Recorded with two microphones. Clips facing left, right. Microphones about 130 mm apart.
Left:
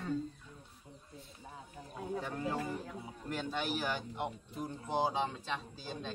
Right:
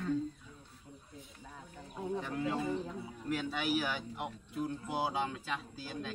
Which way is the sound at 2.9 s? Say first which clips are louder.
Right 2 dB; 20° left (ahead or behind).